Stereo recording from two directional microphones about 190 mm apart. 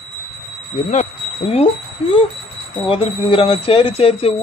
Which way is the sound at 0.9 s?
30° left (ahead or behind).